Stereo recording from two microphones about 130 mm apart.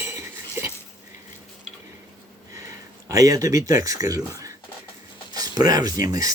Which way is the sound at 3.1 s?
25° right (ahead or behind).